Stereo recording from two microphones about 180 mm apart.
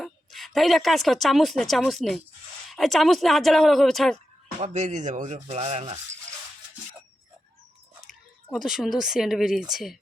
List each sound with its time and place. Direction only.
0.0 s speech: centre (ahead or behind)
4.6 s rub: 40° right (ahead or behind)
8.1 s a sound: centre (ahead or behind)
8.4 s speech: centre (ahead or behind)